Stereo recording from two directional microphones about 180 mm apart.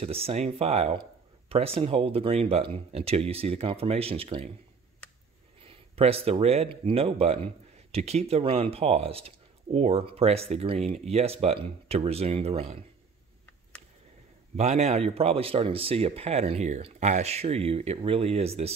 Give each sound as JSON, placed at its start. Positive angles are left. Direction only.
{"t": 0.0, "sound": "speech", "side_deg": -35}
{"t": 5.6, "sound": "speech", "side_deg": -30}
{"t": 14.6, "sound": "speech", "side_deg": -35}